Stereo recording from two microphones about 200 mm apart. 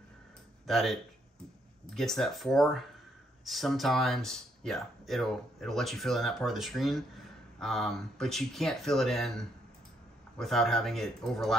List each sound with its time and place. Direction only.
0.7 s speech: centre (ahead or behind)
2.0 s speech: centre (ahead or behind)